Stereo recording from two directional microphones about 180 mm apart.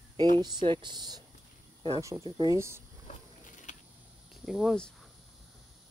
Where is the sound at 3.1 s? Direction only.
45° left (ahead or behind).